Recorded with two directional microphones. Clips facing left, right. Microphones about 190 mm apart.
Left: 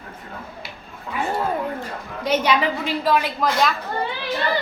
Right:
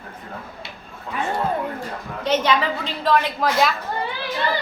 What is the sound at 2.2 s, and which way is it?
Speech, 10° left (ahead or behind).